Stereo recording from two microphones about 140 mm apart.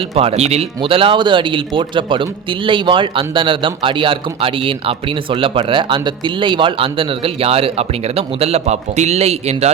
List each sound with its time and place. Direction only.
0.2 s speech: 45° right (ahead or behind)